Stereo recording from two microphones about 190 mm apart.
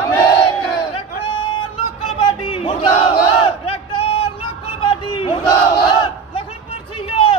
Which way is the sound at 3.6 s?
30° left (ahead or behind).